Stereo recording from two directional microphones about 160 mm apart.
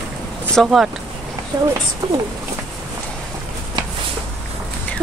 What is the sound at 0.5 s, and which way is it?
Speech, centre (ahead or behind).